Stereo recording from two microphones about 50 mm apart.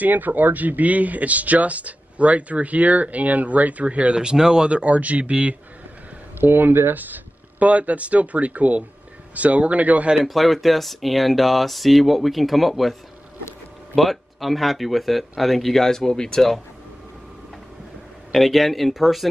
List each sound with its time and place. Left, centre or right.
0.0 s speech: right
6.4 s speech: right
10.2 s speech: centre
13.9 s speech: centre
18.3 s speech: centre